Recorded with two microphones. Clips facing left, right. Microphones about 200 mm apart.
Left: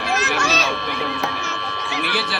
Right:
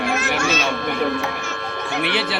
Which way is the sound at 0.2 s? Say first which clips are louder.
Right 1 dB; 40° left (ahead or behind).